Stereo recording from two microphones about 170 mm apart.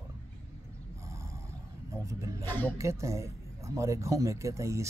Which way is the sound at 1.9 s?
20° right (ahead or behind).